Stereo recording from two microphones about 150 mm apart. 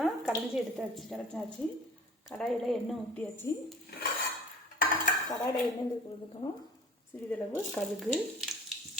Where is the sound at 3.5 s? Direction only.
20° left (ahead or behind).